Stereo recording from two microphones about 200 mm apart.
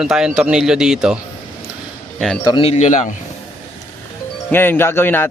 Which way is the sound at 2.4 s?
25° left (ahead or behind).